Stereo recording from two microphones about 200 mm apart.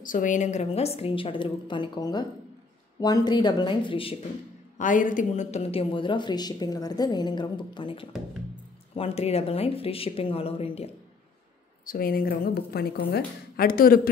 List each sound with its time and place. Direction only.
0.0 s a woman's voice: 40° left (ahead or behind)
4.7 s a woman's voice: 40° left (ahead or behind)
11.8 s a woman's voice: 45° left (ahead or behind)